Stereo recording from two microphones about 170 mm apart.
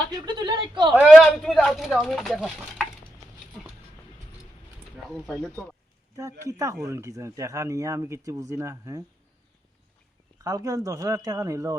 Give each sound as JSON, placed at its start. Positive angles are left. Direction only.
{"t": 0.1, "sound": "speech", "side_deg": -25}
{"t": 1.1, "sound": "speech", "side_deg": 0}
{"t": 5.0, "sound": "speech", "side_deg": 0}
{"t": 6.4, "sound": "speech", "side_deg": -20}
{"t": 10.3, "sound": "speech", "side_deg": -20}